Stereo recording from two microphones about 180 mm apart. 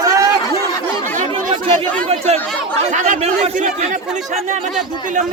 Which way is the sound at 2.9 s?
45° right (ahead or behind).